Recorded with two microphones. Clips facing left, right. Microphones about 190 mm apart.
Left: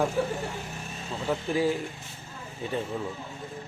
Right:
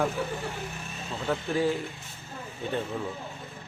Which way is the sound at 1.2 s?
15° left (ahead or behind).